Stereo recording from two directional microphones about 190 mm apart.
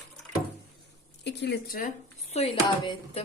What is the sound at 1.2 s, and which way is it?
Speech, 65° left (ahead or behind).